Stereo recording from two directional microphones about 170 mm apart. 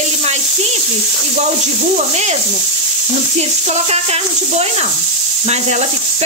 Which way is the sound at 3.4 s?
40° right (ahead or behind).